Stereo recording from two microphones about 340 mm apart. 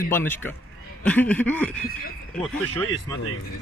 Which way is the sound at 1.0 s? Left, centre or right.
Centre.